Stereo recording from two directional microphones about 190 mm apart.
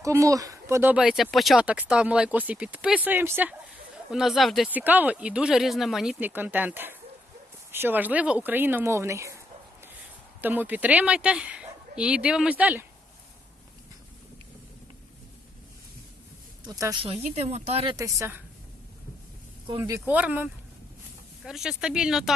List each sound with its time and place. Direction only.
0.0 s speech: 15° right (ahead or behind)
10.4 s speech: 10° right (ahead or behind)
16.6 s a woman's voice: 20° right (ahead or behind)
17.0 s speech: 30° right (ahead or behind)
17.9 s speech: 15° right (ahead or behind)
19.8 s speech: 10° right (ahead or behind)